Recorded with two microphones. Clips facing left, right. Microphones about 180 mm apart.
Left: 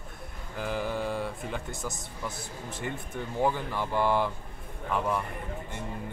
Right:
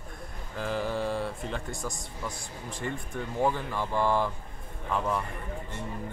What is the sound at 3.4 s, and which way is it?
Speech, 10° left (ahead or behind).